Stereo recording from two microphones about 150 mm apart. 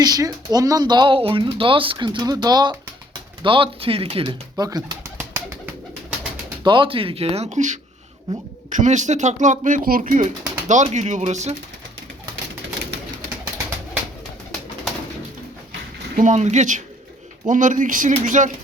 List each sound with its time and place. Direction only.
0.0 s speech: 25° right (ahead or behind)
6.7 s speech: 35° right (ahead or behind); by 11.5 s 50° right (ahead or behind)
16.1 s speech: 55° right (ahead or behind)